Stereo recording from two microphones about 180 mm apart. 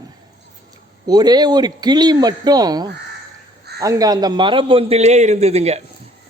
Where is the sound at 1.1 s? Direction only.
20° right (ahead or behind); by 5.8 s 35° right (ahead or behind).